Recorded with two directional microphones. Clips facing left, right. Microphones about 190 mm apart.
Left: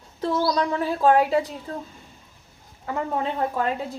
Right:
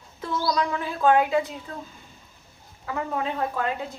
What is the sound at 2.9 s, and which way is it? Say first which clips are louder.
Speech: left 2 dB; 30° left (ahead or behind).